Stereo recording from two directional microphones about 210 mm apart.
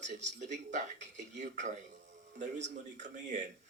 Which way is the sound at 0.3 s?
35° right (ahead or behind).